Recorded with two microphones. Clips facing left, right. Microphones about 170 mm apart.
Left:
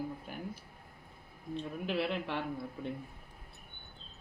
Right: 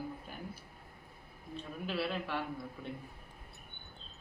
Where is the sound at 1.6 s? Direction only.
20° left (ahead or behind).